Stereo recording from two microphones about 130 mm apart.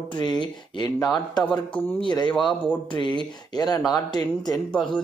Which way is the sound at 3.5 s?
30° left (ahead or behind).